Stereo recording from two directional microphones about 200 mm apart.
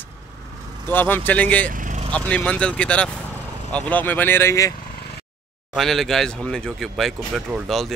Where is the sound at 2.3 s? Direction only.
5° left (ahead or behind).